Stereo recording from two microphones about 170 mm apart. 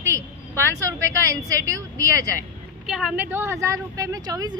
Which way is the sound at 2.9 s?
5° right (ahead or behind).